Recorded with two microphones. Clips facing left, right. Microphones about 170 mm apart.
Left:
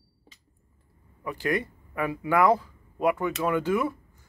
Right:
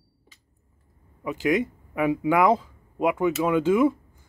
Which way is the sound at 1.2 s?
15° right (ahead or behind).